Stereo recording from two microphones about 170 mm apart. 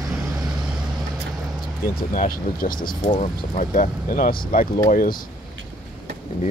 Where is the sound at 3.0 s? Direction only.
40° left (ahead or behind).